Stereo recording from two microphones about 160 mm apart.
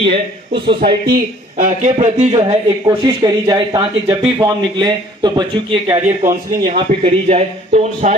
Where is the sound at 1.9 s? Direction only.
45° right (ahead or behind).